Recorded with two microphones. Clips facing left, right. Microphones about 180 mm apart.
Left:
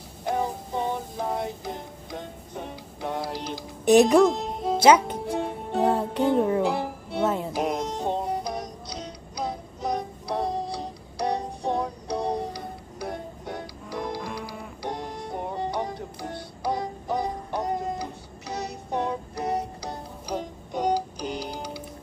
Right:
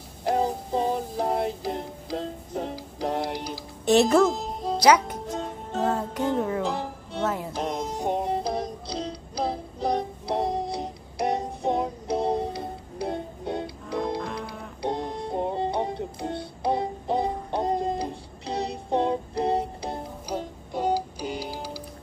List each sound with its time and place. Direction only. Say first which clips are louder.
0.3 s music: right 3 dB; 30° right (ahead or behind)
3.8 s speech: left 3 dB; 15° left (ahead or behind)
4.2 s music: left 2 dB; centre (ahead or behind)
4.7 s speech: left 2 dB; 25° left (ahead or behind)
5.1 s music: left 3 dB; 10° left (ahead or behind)
7.8 s music: right 1 dB; 10° right (ahead or behind)
14.2 s music: right 1 dB; 5° left (ahead or behind)
14.8 s music: right 5 dB; 25° right (ahead or behind)
20.2 s music: left 2 dB; 5° right (ahead or behind)